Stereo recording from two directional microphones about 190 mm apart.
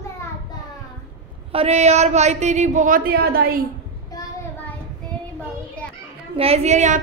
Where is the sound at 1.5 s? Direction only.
35° right (ahead or behind); by 3.6 s 50° right (ahead or behind).